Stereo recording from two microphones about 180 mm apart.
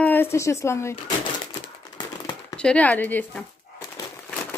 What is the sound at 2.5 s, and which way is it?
Speech, 5° left (ahead or behind).